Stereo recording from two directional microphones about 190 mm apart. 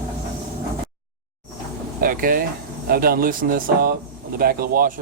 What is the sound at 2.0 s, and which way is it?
Speech, 50° right (ahead or behind).